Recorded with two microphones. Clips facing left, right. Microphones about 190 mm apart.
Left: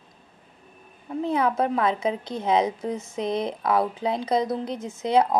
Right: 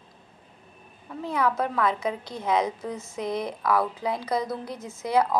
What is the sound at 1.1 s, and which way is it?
A woman's voice, 25° left (ahead or behind).